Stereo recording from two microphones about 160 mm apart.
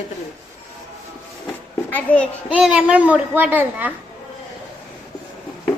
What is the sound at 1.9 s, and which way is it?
Speech, 10° left (ahead or behind).